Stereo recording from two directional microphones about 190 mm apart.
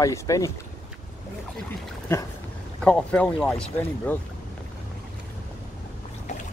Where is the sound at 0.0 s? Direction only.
15° left (ahead or behind).